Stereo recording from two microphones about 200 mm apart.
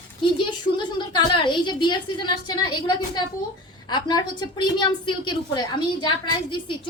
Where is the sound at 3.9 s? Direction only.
20° left (ahead or behind).